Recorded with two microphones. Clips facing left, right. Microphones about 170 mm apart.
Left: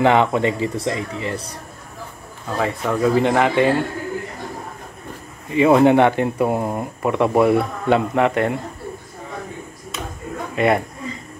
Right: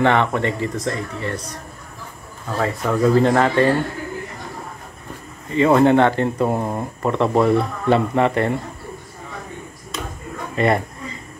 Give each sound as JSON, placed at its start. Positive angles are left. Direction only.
{"t": 0.0, "sound": "speech", "side_deg": 10}
{"t": 1.3, "sound": "speech", "side_deg": 30}
{"t": 2.5, "sound": "speech", "side_deg": 5}
{"t": 5.5, "sound": "speech", "side_deg": 10}
{"t": 10.5, "sound": "speech", "side_deg": 5}